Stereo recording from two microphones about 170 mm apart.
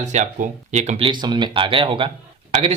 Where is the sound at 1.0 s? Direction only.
25° right (ahead or behind).